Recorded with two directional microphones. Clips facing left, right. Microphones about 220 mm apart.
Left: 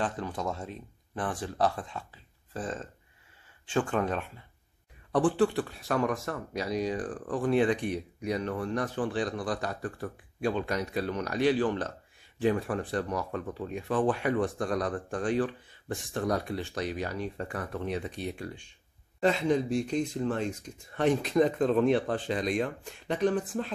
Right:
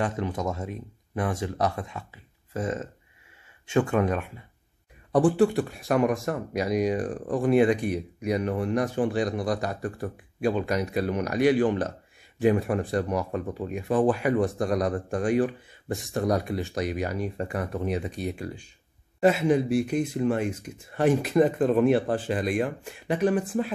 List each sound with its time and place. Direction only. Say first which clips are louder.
0.1 s speech: right 6 dB; 20° right (ahead or behind)
0.6 s speech: right 5 dB; 10° right (ahead or behind)
3.9 s speech: right 5 dB; 10° right (ahead or behind)
5.3 s speech: right 4 dB; 10° right (ahead or behind)